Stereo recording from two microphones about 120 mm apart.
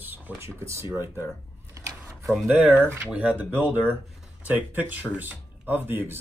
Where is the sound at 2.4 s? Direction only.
15° right (ahead or behind).